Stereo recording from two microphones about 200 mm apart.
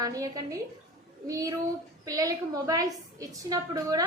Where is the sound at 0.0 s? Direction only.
15° right (ahead or behind).